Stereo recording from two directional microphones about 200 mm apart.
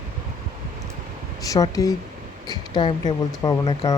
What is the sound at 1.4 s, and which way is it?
Speech, 15° left (ahead or behind).